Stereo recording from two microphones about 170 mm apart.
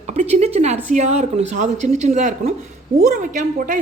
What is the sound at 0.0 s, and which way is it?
A woman's voice, 40° right (ahead or behind).